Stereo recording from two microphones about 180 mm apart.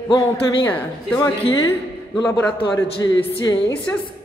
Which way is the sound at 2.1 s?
20° left (ahead or behind).